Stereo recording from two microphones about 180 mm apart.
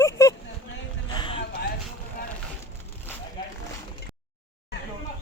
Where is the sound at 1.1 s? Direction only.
25° left (ahead or behind).